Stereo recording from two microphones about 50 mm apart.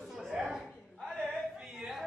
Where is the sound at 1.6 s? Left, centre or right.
Centre.